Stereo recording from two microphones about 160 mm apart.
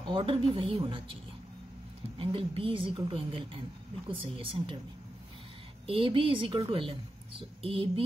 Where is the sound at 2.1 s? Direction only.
35° right (ahead or behind).